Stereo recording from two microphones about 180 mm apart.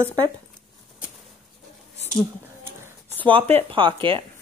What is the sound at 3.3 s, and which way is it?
Speech, 35° right (ahead or behind).